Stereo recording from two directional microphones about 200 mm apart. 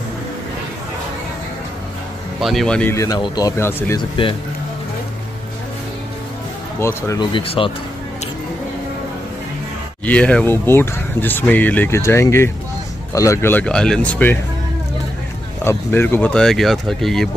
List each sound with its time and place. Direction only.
2.4 s speech: centre (ahead or behind)
6.8 s speech: 15° left (ahead or behind)
10.0 s speech: 5° left (ahead or behind)
15.6 s speech: 10° left (ahead or behind)